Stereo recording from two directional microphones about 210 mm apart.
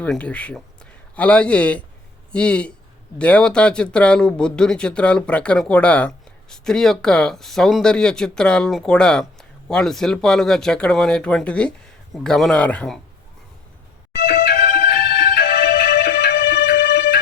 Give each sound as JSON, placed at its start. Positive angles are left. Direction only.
{"t": 0.0, "sound": "speech", "side_deg": 5}
{"t": 14.2, "sound": "music", "side_deg": 45}